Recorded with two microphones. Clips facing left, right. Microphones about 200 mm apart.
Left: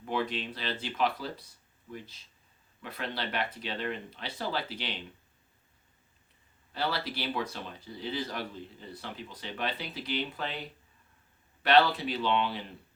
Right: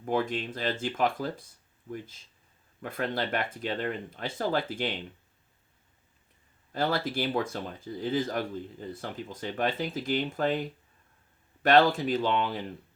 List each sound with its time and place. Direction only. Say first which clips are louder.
0.0 s speech: right 4 dB; 45° right (ahead or behind)
6.7 s speech: right 5 dB; 45° right (ahead or behind)